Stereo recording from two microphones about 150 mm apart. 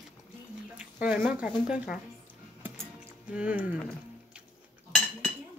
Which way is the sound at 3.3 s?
10° right (ahead or behind).